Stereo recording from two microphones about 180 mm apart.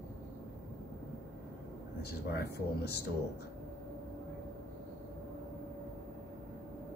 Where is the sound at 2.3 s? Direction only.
65° left (ahead or behind).